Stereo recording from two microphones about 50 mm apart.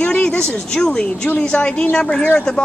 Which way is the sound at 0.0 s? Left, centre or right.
Left.